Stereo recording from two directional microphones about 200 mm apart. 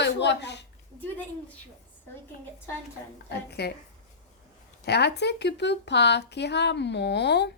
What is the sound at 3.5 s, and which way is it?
Speech, 55° left (ahead or behind).